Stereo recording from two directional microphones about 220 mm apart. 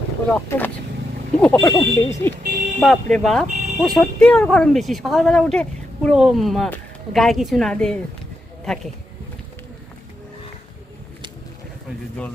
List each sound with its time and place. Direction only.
0.3 s speech: 5° left (ahead or behind)
2.4 s speech: 40° right (ahead or behind)
2.8 s a woman's voice: centre (ahead or behind)